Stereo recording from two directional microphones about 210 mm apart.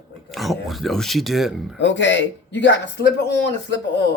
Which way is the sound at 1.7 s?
60° left (ahead or behind).